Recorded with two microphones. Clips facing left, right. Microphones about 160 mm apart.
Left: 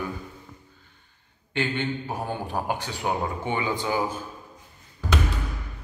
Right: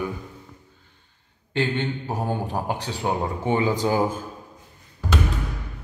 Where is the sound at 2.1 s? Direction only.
35° right (ahead or behind).